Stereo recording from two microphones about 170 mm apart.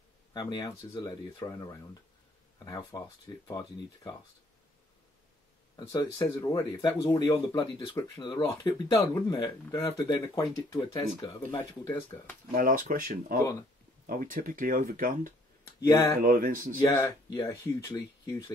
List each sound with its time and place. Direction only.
0.3 s speech: 25° left (ahead or behind)
2.9 s speech: 20° left (ahead or behind)
5.8 s speech: 20° left (ahead or behind)
12.5 s speech: 55° right (ahead or behind)
13.4 s speech: 20° left (ahead or behind)
14.0 s speech: 55° right (ahead or behind)
15.6 s speech: 20° left (ahead or behind)
16.2 s speech: 55° right (ahead or behind)
16.8 s speech: 20° left (ahead or behind)